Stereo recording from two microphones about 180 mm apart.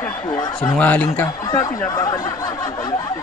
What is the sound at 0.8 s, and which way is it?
Speech, 10° left (ahead or behind).